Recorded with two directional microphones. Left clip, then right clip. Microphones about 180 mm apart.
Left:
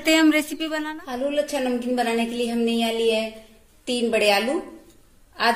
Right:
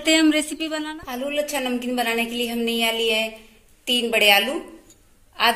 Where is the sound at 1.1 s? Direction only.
50° left (ahead or behind).